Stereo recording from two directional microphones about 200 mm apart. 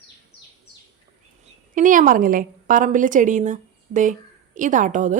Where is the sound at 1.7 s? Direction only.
40° right (ahead or behind).